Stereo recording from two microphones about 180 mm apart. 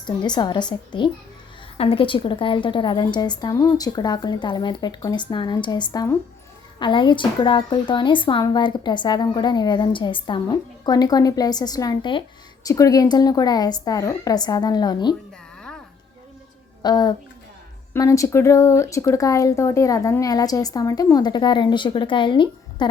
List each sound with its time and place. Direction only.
0.1 s a woman's voice: 25° left (ahead or behind)
16.8 s a woman's voice: 25° left (ahead or behind)